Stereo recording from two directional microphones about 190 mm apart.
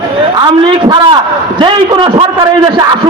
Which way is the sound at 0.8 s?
25° right (ahead or behind).